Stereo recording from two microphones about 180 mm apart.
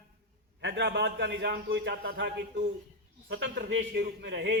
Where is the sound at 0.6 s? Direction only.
75° right (ahead or behind).